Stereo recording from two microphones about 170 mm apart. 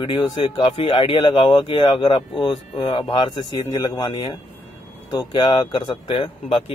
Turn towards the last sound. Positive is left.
turn(degrees=30)  # may be behind; listen again after turning